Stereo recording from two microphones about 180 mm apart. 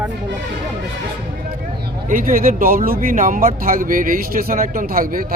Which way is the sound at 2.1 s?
50° right (ahead or behind).